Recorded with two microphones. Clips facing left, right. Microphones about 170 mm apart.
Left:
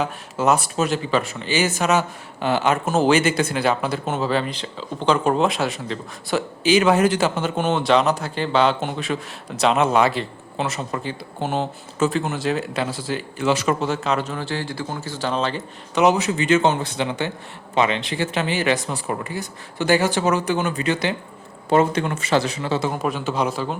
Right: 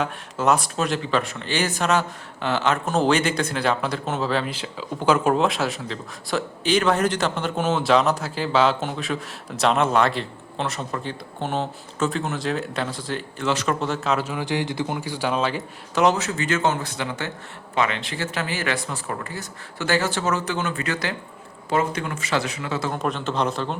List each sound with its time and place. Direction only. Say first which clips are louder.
0.0 s speech: left 2 dB; centre (ahead or behind)
16.0 s speech: left 4 dB; 15° left (ahead or behind); by 22.8 s 30° left (ahead or behind)
22.9 s speech: left 2 dB; 5° left (ahead or behind)